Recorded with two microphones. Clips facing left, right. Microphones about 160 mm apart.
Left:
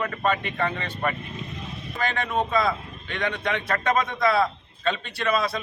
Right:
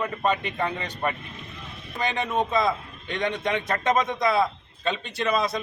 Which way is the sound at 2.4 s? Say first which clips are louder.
Even; 20° right (ahead or behind).